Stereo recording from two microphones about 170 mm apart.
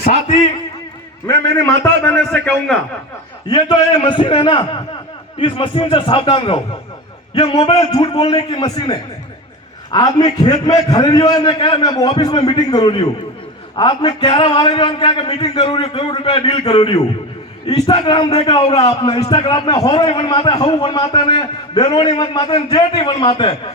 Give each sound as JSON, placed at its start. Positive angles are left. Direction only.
{"t": 0.0, "sound": "a man's voice", "side_deg": 45}
{"t": 1.3, "sound": "a man's voice", "side_deg": 20}
{"t": 3.5, "sound": "a man's voice", "side_deg": 25}
{"t": 18.8, "sound": "a man's voice", "side_deg": 40}
{"t": 19.2, "sound": "a man's voice", "side_deg": 25}